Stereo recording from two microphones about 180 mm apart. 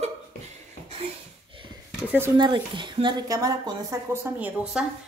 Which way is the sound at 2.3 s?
25° right (ahead or behind).